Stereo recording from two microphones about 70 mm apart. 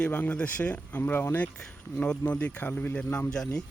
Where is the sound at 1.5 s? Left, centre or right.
Centre.